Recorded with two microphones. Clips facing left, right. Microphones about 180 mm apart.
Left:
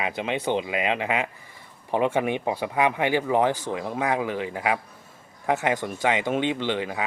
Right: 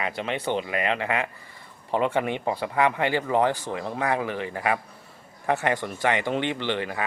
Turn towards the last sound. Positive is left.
turn(degrees=10)  # may be behind; listen again after turning